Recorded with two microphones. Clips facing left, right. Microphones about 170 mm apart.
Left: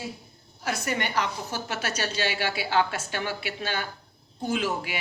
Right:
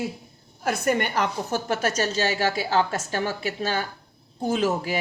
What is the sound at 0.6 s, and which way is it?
A woman's voice, 50° right (ahead or behind).